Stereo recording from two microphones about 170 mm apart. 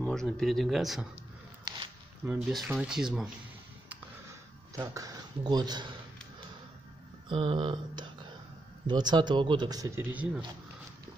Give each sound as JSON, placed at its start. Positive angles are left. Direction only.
{"t": 0.0, "sound": "speech", "side_deg": 5}
{"t": 2.2, "sound": "speech", "side_deg": -5}
{"t": 4.7, "sound": "speech", "side_deg": -20}
{"t": 7.2, "sound": "a sound", "side_deg": -30}
{"t": 8.8, "sound": "speech", "side_deg": -25}